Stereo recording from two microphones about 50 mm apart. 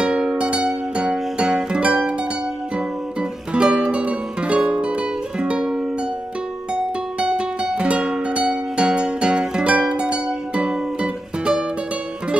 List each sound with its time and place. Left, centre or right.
0.0 s music: centre
3.2 s music: centre